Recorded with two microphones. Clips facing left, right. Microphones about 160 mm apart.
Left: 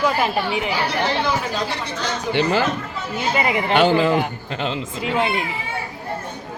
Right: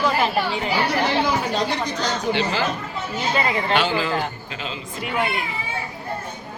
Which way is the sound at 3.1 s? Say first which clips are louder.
Left 2 dB; 15° left (ahead or behind).